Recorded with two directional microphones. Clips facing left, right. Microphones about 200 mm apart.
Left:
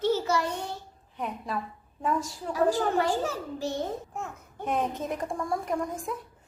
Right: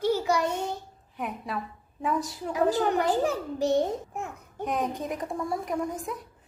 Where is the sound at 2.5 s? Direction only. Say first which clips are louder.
Right 1 dB; 20° right (ahead or behind).